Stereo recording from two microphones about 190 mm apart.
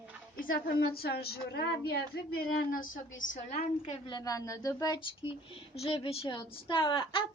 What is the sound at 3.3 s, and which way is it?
A woman's voice, 35° left (ahead or behind).